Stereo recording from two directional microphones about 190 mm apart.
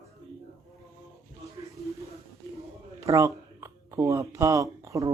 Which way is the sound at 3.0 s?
15° right (ahead or behind).